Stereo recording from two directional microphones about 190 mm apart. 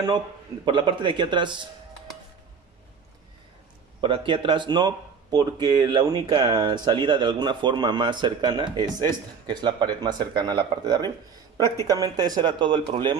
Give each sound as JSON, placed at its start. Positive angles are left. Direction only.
{"t": 0.7, "sound": "speech", "side_deg": -25}
{"t": 4.0, "sound": "speech", "side_deg": -25}
{"t": 11.6, "sound": "speech", "side_deg": 15}
{"t": 11.9, "sound": "speech", "side_deg": -20}